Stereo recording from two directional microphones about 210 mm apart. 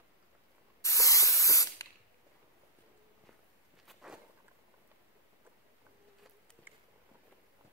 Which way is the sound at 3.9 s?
Centre (ahead or behind).